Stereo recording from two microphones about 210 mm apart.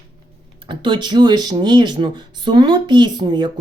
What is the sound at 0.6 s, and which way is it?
Speech, 25° right (ahead or behind).